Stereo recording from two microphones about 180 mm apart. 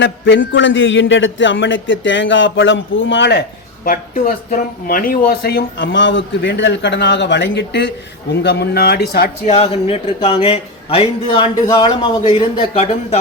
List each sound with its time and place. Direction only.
0.0 s a man's voice: 85° left
3.8 s speech: 50° left (ahead or behind)
9.5 s a man's voice: 30° left (ahead or behind)